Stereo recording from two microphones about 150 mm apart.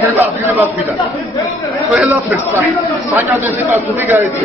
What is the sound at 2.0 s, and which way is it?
Chatter, 10° right (ahead or behind).